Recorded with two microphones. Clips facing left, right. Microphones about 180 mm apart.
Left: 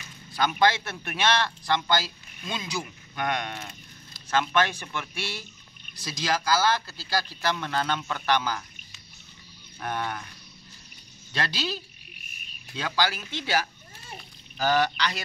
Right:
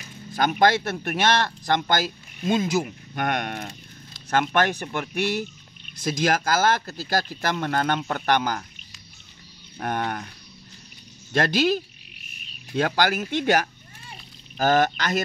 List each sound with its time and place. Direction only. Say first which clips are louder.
0.3 s a man's voice: right 3 dB; 45° right (ahead or behind)
9.8 s a man's voice: right 4 dB; 50° right (ahead or behind)
11.3 s a man's voice: right 10 dB; 50° right (ahead or behind)